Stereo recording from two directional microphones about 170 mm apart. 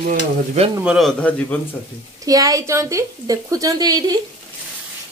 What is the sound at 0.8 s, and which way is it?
Speech, centre (ahead or behind).